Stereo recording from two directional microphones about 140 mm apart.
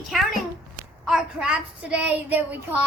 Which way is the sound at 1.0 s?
5° right (ahead or behind).